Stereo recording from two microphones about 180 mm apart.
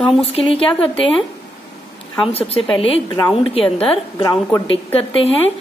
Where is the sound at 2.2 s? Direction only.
35° left (ahead or behind).